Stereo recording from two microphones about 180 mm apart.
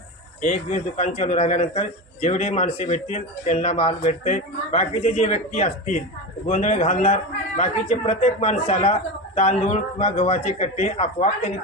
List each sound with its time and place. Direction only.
0.4 s a man's voice: 40° left (ahead or behind)